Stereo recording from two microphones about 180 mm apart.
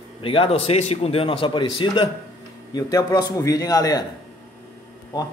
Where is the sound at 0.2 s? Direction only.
30° left (ahead or behind).